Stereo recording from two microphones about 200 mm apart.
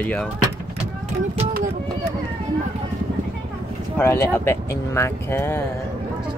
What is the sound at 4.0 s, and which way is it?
Speech, 10° left (ahead or behind).